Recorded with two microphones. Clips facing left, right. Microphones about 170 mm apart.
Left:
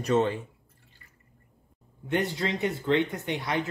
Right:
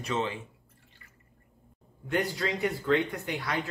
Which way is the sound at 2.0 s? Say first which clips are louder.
Left 2 dB; 20° left (ahead or behind).